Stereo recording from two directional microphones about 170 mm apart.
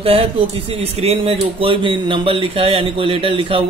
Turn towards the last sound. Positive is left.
turn(degrees=-30)  # may be behind; listen again after turning